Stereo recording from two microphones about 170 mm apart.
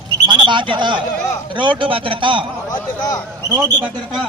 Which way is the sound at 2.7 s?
20° left (ahead or behind).